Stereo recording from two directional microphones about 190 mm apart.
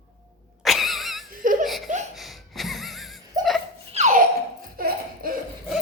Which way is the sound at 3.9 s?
40° right (ahead or behind).